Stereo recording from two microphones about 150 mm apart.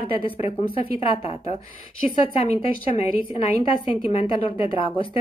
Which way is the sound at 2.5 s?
45° left (ahead or behind).